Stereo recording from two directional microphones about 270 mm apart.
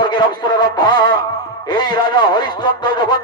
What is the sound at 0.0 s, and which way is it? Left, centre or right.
A man's voice, centre.